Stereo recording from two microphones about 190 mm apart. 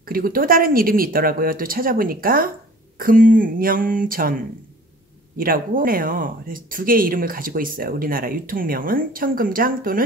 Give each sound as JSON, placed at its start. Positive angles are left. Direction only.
{"t": 0.0, "sound": "speech", "side_deg": -50}
{"t": 5.4, "sound": "speech", "side_deg": -50}